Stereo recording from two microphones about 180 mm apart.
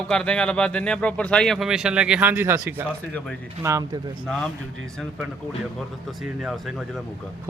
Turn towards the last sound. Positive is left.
turn(degrees=0)  # may be behind; listen again after turning